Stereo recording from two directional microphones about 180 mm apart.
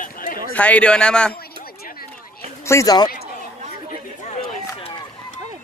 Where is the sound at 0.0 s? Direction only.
50° left (ahead or behind).